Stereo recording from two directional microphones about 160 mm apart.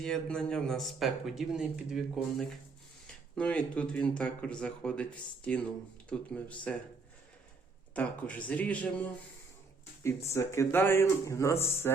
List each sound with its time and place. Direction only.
0.0 s speech: 5° left (ahead or behind)
7.9 s speech: 10° left (ahead or behind)